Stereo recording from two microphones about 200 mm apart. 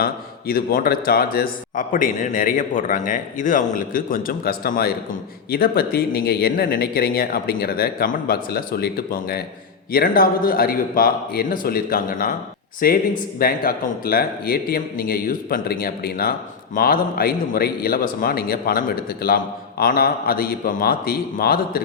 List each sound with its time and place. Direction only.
0.0 s a man's voice: 45° left (ahead or behind)